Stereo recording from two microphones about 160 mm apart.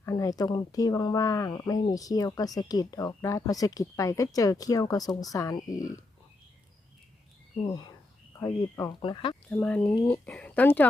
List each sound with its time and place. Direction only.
0.0 s speech: 20° left (ahead or behind)
7.7 s speech: 25° left (ahead or behind)
8.9 s speech: 30° left (ahead or behind)
9.5 s speech: 10° left (ahead or behind)